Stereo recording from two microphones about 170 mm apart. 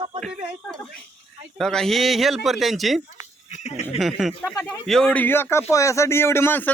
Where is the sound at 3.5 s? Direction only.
40° left (ahead or behind).